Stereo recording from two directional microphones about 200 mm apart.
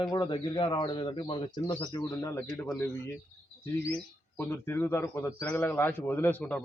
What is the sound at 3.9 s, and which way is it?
Speech, 10° left (ahead or behind).